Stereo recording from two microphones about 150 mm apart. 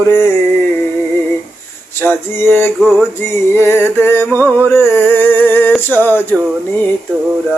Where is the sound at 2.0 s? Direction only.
15° left (ahead or behind).